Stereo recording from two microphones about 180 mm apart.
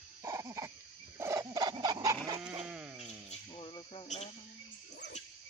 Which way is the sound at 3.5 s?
30° left (ahead or behind).